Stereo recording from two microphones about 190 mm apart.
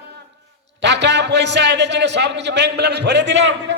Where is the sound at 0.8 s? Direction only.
65° right (ahead or behind).